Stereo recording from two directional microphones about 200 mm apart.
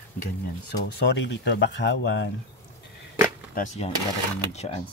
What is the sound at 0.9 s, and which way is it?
Speech, 60° left (ahead or behind).